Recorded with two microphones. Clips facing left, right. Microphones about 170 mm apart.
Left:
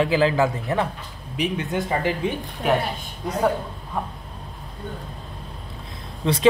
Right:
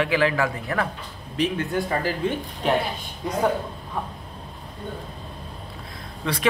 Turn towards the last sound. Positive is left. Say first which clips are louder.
# left 6 dB
turn(degrees=25)  # may be behind; listen again after turning